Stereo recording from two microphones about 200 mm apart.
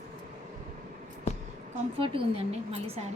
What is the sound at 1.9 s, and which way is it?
Speech, 25° right (ahead or behind).